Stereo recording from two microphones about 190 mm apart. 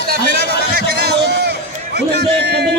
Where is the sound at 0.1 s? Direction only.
55° right (ahead or behind).